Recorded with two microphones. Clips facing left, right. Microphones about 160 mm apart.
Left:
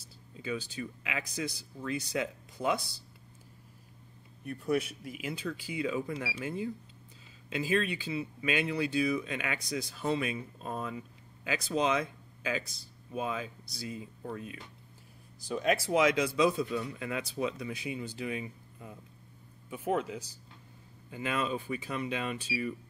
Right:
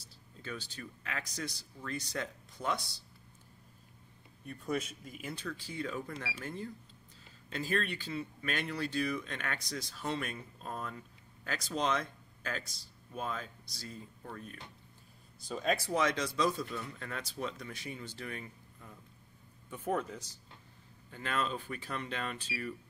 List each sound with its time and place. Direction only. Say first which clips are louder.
0.4 s speech: left 7 dB; 10° left (ahead or behind)
4.7 s speech: left 5 dB; 65° left (ahead or behind)
5.1 s speech: left 4 dB; 10° left (ahead or behind)